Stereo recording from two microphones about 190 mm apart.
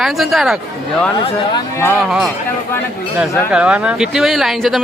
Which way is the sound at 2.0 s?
Centre (ahead or behind).